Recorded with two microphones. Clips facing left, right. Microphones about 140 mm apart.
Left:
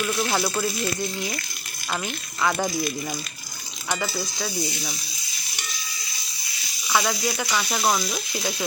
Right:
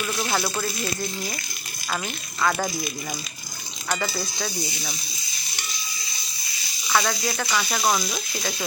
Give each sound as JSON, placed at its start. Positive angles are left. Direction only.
{"t": 0.0, "sound": "sizzle", "side_deg": 0}
{"t": 2.4, "sound": "sizzle", "side_deg": 5}
{"t": 6.8, "sound": "sizzle", "side_deg": 5}